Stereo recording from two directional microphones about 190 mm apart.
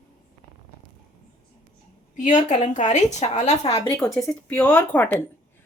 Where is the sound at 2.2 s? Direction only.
40° left (ahead or behind).